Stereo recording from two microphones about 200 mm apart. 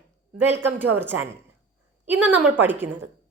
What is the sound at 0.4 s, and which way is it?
A woman's voice, 10° right (ahead or behind).